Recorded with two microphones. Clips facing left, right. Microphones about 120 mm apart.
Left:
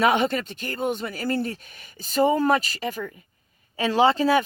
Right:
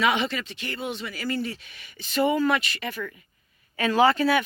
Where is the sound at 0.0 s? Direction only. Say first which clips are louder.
Left 4 dB; 45° left (ahead or behind).